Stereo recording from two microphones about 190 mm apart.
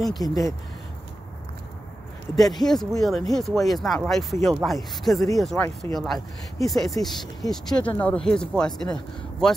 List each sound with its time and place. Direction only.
0.2 s speech: 20° left (ahead or behind)
2.3 s speech: centre (ahead or behind)